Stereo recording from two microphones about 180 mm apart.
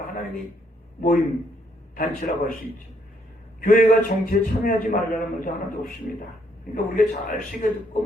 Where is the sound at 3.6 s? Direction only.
45° left (ahead or behind).